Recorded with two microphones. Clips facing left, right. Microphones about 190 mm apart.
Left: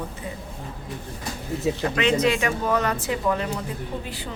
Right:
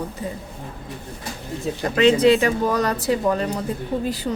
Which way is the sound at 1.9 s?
35° right (ahead or behind).